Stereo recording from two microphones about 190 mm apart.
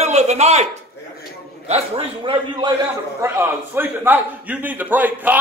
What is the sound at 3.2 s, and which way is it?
A man's voice, 10° right (ahead or behind).